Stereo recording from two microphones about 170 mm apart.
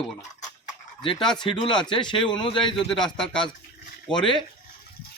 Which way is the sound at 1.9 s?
30° left (ahead or behind).